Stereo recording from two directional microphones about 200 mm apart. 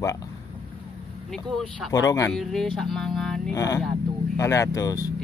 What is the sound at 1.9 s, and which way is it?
Speech, 15° left (ahead or behind).